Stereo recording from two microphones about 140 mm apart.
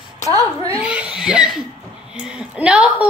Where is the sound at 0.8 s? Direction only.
10° right (ahead or behind).